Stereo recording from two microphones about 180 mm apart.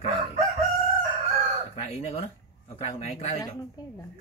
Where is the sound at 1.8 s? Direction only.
35° left (ahead or behind).